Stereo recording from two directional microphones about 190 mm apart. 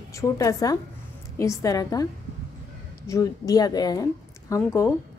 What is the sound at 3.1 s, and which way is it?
A woman's voice, 20° left (ahead or behind).